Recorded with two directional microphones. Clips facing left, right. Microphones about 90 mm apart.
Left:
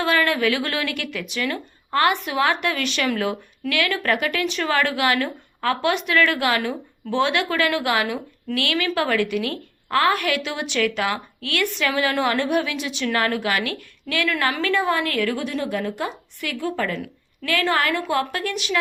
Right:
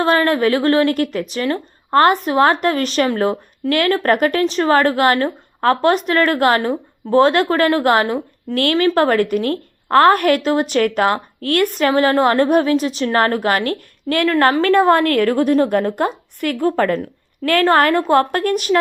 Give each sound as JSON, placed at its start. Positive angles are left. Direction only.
{"t": 0.0, "sound": "a woman's voice", "side_deg": -40}